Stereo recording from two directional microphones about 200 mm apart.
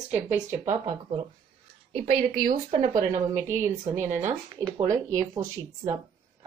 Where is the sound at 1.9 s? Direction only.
30° right (ahead or behind).